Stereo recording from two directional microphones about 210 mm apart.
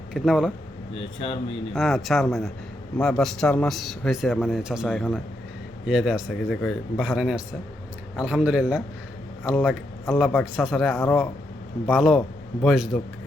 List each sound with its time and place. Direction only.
0.1 s speech: 5° right (ahead or behind)
0.9 s speech: 25° left (ahead or behind)
1.7 s a man's voice: centre (ahead or behind)